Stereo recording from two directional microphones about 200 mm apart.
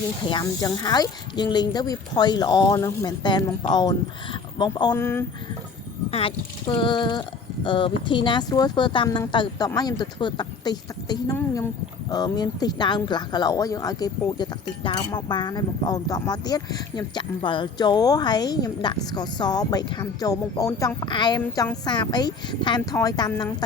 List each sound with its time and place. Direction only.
0.3 s speech: 20° left (ahead or behind)
6.1 s speech: 30° left (ahead or behind)